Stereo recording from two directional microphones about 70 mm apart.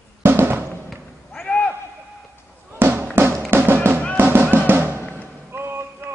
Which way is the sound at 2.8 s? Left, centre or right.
Right.